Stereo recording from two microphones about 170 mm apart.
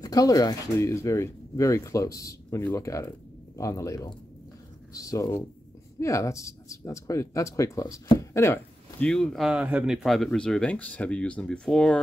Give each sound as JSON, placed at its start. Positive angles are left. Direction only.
{"t": 0.0, "sound": "speech", "side_deg": 20}
{"t": 9.0, "sound": "speech", "side_deg": 5}